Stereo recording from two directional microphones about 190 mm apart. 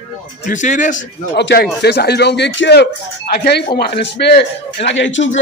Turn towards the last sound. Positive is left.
turn(degrees=80)